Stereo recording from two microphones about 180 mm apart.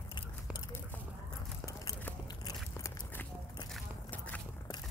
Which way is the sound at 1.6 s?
20° left (ahead or behind).